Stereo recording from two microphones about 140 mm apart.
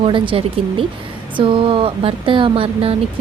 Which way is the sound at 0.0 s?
40° right (ahead or behind).